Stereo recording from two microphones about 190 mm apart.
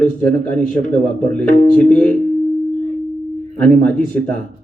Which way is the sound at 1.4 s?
45° left (ahead or behind).